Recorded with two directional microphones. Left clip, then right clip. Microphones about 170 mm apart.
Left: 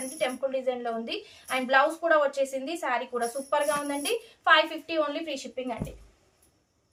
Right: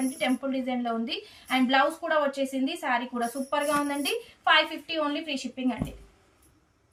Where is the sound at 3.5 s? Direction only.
50° left (ahead or behind).